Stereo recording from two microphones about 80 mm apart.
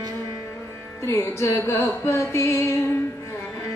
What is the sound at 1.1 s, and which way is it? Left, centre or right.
Music, left.